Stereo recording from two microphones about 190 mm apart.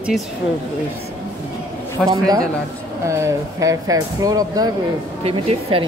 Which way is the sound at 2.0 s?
Centre (ahead or behind).